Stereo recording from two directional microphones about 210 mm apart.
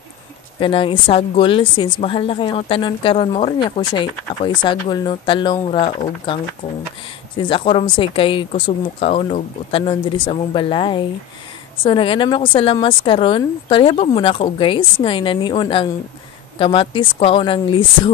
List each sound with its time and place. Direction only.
0.6 s a woman's voice: 25° left (ahead or behind)